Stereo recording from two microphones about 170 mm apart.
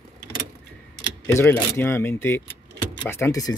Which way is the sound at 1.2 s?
15° left (ahead or behind).